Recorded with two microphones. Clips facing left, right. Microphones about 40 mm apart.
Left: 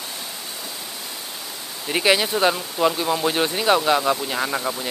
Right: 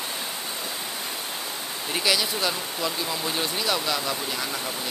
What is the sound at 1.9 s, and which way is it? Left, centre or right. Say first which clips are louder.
Speech: left 6 dB; left.